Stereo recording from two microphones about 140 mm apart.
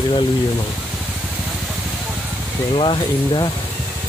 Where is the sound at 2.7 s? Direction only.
35° left (ahead or behind).